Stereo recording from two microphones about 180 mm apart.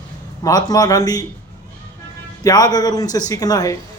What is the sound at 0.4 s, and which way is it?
Speech, 20° left (ahead or behind).